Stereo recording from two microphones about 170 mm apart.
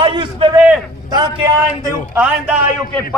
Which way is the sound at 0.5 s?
5° right (ahead or behind).